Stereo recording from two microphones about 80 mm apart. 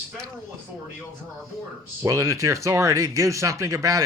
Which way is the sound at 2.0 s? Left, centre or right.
Right.